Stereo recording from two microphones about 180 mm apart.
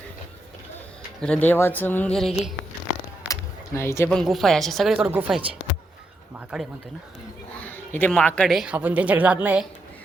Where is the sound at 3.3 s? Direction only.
15° left (ahead or behind).